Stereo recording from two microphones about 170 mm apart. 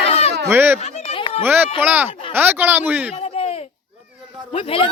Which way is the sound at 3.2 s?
40° left (ahead or behind).